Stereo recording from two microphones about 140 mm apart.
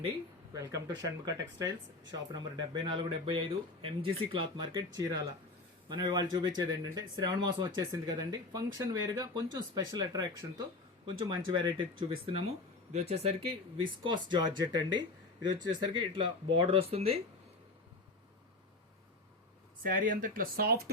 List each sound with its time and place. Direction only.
0.5 s speech: 25° right (ahead or behind)
5.9 s speech: 30° right (ahead or behind)
19.8 s speech: 90° right